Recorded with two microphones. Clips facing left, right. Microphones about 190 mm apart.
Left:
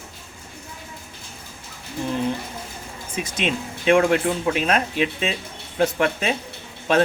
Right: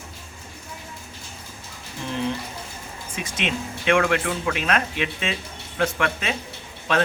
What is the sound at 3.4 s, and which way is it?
Speech, 35° left (ahead or behind).